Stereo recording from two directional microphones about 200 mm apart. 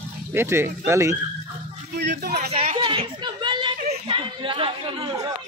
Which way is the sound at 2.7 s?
25° right (ahead or behind).